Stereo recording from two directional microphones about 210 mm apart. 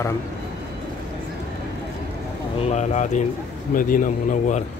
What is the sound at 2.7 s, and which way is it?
A man's voice, 35° left (ahead or behind).